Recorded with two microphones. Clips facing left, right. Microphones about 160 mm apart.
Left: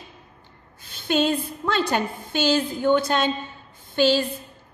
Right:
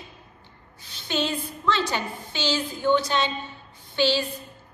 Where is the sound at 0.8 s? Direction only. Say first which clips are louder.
Left 5 dB; 50° left (ahead or behind).